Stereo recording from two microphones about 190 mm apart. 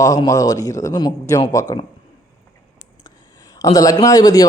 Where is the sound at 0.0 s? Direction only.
15° left (ahead or behind).